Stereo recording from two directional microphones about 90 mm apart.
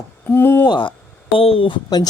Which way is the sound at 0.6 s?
60° left (ahead or behind).